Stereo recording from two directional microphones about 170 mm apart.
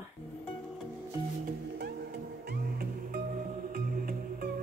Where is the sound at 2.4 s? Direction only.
60° right (ahead or behind).